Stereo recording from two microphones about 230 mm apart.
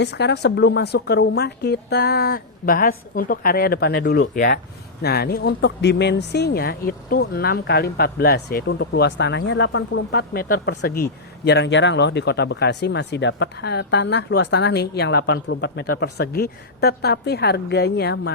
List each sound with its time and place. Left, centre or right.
0.0 s speech: left